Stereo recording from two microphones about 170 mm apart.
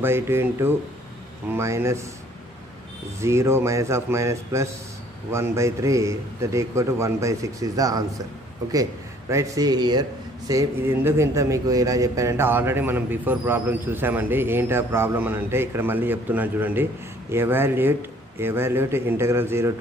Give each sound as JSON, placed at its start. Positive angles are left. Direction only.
{"t": 0.0, "sound": "a man's voice", "side_deg": -15}
{"t": 3.2, "sound": "a man's voice", "side_deg": -15}
{"t": 9.3, "sound": "a man's voice", "side_deg": -20}